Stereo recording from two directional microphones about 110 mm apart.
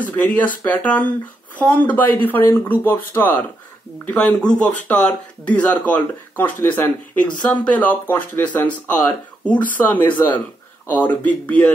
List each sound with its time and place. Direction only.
0.1 s speech: 15° left (ahead or behind)